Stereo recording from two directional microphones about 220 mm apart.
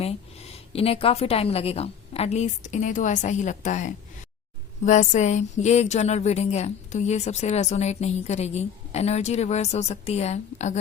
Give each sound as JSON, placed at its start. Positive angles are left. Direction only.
{"t": 0.7, "sound": "a woman's voice", "side_deg": 25}